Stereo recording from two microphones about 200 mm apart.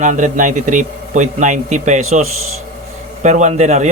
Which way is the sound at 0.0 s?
40° right (ahead or behind).